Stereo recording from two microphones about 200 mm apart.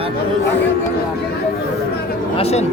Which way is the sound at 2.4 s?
30° left (ahead or behind).